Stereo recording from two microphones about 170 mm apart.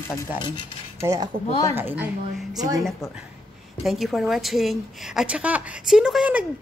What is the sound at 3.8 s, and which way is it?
A woman's voice, centre (ahead or behind).